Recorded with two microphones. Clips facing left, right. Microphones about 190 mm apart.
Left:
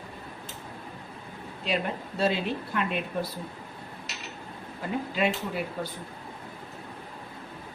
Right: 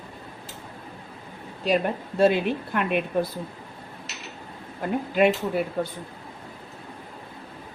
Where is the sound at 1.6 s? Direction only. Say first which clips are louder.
Right 6 dB; 45° right (ahead or behind).